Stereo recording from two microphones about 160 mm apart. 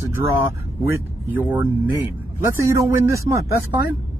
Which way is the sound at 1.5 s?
10° right (ahead or behind).